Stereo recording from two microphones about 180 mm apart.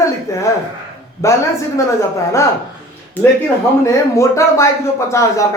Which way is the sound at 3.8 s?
15° left (ahead or behind).